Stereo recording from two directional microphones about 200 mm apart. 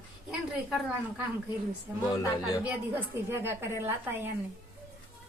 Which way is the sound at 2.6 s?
10° right (ahead or behind).